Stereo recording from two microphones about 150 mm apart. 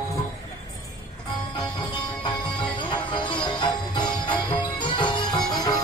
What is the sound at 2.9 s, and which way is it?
Music, 30° left (ahead or behind).